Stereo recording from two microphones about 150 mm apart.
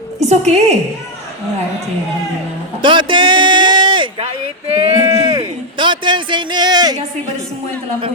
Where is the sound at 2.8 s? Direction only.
35° right (ahead or behind).